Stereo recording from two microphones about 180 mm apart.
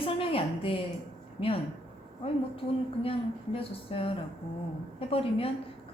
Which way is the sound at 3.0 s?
30° left (ahead or behind).